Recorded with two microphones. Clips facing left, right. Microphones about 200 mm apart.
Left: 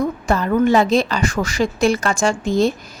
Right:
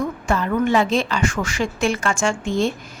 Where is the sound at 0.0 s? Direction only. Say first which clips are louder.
Left 3 dB; 40° left (ahead or behind).